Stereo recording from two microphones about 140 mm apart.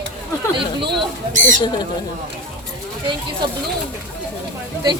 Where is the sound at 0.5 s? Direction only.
35° right (ahead or behind).